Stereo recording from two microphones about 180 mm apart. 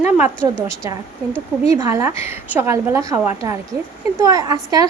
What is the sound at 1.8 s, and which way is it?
A woman's voice, 15° right (ahead or behind).